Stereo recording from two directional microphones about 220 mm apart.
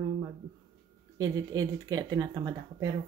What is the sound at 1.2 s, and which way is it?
Speech, 15° right (ahead or behind).